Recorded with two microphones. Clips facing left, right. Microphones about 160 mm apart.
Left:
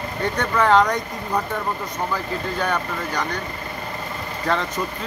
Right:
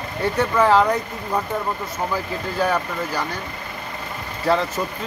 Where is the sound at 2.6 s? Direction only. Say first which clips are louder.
Right 5 dB; 5° right (ahead or behind).